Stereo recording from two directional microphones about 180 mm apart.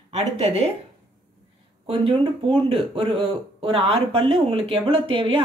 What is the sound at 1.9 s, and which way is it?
Speech, 30° right (ahead or behind).